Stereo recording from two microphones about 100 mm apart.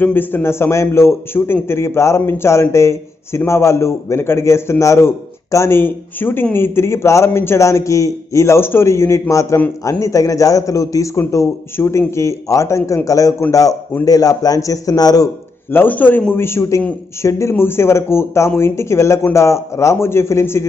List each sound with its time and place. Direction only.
0.0 s a man's voice: 20° left (ahead or behind); by 15.2 s 40° left (ahead or behind)
15.7 s a man's voice: 20° left (ahead or behind)